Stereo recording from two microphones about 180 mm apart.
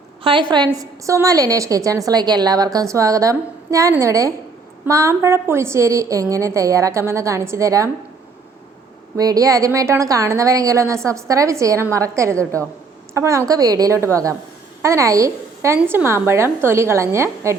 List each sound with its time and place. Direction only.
0.3 s a woman's voice: 25° right (ahead or behind)
9.1 s a woman's voice: 20° right (ahead or behind)